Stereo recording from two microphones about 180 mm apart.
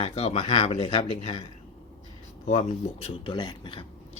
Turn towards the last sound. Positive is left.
turn(degrees=25)  # may be behind; listen again after turning